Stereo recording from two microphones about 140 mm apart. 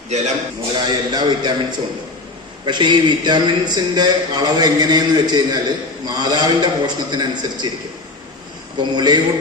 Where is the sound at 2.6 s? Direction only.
35° right (ahead or behind).